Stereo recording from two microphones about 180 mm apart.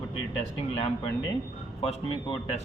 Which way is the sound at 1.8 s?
30° left (ahead or behind).